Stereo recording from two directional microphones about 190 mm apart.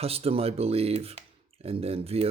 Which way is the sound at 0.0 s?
30° right (ahead or behind).